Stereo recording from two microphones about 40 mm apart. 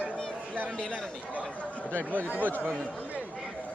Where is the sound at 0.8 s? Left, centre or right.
Left.